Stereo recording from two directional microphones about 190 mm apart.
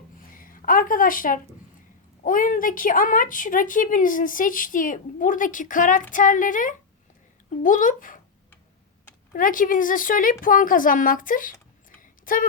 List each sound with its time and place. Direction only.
0.3 s a woman's voice: 45° left (ahead or behind)
9.3 s a woman's voice: 45° left (ahead or behind)
11.9 s a sound: 45° left (ahead or behind)